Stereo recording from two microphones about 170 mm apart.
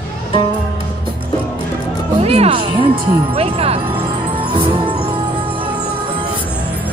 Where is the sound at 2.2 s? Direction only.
35° right (ahead or behind).